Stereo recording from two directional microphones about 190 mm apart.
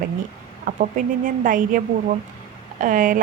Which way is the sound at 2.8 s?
45° right (ahead or behind).